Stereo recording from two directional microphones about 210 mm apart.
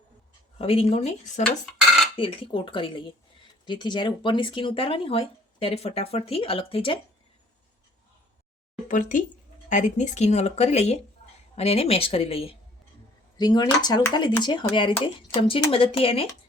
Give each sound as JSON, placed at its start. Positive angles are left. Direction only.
{"t": 0.6, "sound": "speech", "side_deg": 25}
{"t": 8.9, "sound": "speech", "side_deg": 40}